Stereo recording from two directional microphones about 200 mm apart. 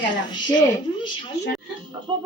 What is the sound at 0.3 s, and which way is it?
Speech, 20° left (ahead or behind).